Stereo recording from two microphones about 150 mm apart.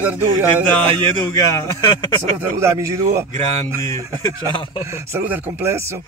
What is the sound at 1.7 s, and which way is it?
Speech, 25° left (ahead or behind).